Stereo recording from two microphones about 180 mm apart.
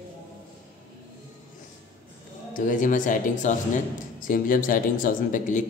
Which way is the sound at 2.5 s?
45° left (ahead or behind).